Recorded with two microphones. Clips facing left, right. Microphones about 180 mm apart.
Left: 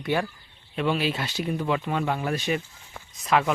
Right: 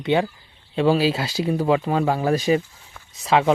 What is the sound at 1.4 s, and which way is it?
Speech, 35° right (ahead or behind).